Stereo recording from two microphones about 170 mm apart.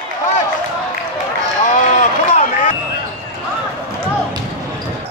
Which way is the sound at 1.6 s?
45° left (ahead or behind).